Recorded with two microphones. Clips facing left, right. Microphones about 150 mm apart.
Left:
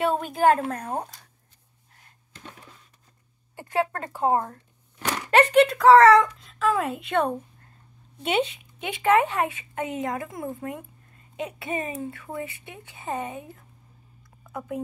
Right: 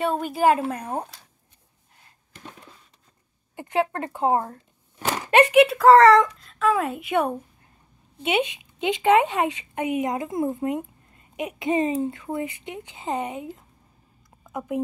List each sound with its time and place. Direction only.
0.0 s a woman's voice: centre (ahead or behind)
3.5 s speech: 20° right (ahead or behind)
5.4 s a woman's voice: 10° right (ahead or behind)
8.7 s speech: 25° right (ahead or behind)
14.4 s a sound: 20° right (ahead or behind)